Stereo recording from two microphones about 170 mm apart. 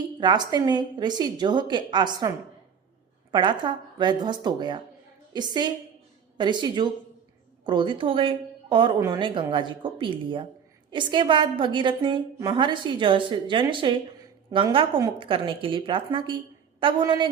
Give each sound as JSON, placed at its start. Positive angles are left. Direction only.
{"t": 0.2, "sound": "a woman's voice", "side_deg": -25}
{"t": 3.3, "sound": "a woman's voice", "side_deg": -25}